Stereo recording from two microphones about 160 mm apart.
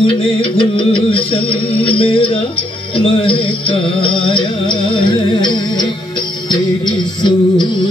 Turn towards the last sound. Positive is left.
turn(degrees=30)  # may be behind; listen again after turning